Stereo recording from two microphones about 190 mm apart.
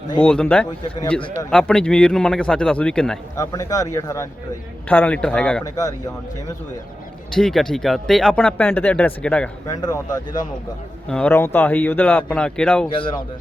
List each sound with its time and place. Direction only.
0.2 s speech: 5° left (ahead or behind)
3.3 s speech: 15° left (ahead or behind)
4.9 s speech: 5° left (ahead or behind)
5.6 s speech: 20° left (ahead or behind)
7.3 s speech: centre (ahead or behind)
9.6 s speech: 20° left (ahead or behind)
11.1 s speech: 10° left (ahead or behind)
12.9 s speech: 30° left (ahead or behind)